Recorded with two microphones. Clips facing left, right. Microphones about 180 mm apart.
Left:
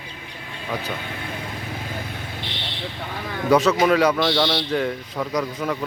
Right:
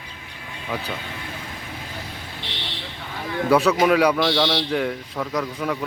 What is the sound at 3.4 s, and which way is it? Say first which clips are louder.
Speech: even; 5° right (ahead or behind).